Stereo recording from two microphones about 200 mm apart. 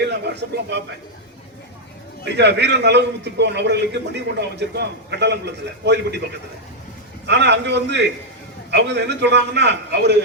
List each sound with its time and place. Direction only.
0.3 s a man's voice: 60° right (ahead or behind)
2.2 s a man's voice: 60° right (ahead or behind)
7.3 s a man's voice: 60° right (ahead or behind)